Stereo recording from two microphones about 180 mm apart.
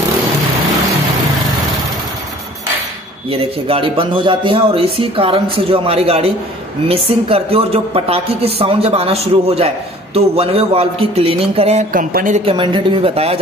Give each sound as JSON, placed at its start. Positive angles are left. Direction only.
{"t": 3.3, "sound": "speech", "side_deg": -30}
{"t": 11.9, "sound": "speech", "side_deg": -50}
{"t": 12.4, "sound": "speech", "side_deg": -30}